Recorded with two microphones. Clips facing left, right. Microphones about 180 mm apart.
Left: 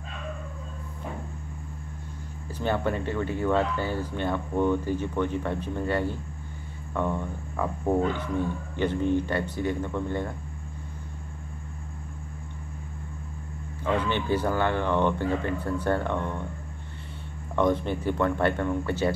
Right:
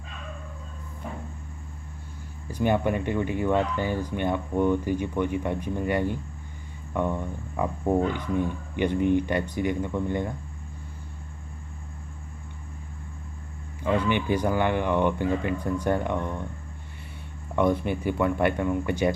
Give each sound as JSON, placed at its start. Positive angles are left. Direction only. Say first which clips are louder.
{"t": 2.5, "sound": "speech", "louder": "right 3 dB", "side_deg": -15}
{"t": 13.8, "sound": "speech", "louder": "right 2 dB", "side_deg": -10}
{"t": 17.6, "sound": "speech", "louder": "right 1 dB", "side_deg": -10}